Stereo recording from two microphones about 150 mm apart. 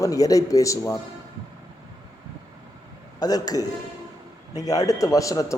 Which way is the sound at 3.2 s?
25° left (ahead or behind).